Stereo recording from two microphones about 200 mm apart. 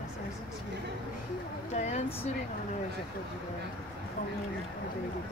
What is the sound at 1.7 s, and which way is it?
Speech, 35° left (ahead or behind).